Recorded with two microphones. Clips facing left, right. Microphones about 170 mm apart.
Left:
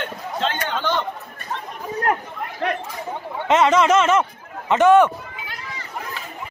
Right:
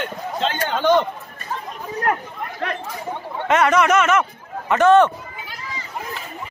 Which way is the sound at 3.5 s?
25° left (ahead or behind).